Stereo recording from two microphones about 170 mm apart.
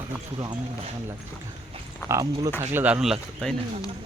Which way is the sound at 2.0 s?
20° right (ahead or behind).